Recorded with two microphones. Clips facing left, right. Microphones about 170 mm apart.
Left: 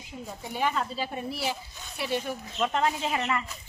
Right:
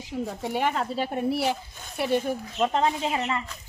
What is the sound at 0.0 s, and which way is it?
Speech, 75° right (ahead or behind).